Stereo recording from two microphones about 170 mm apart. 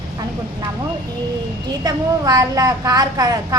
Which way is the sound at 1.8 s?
20° right (ahead or behind).